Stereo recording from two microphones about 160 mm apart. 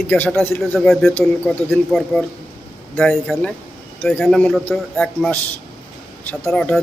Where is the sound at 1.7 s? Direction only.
Centre (ahead or behind).